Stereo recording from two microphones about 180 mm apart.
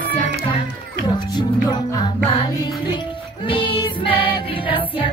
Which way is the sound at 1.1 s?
25° left (ahead or behind).